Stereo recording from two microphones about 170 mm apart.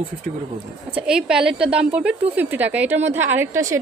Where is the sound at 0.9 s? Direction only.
5° right (ahead or behind).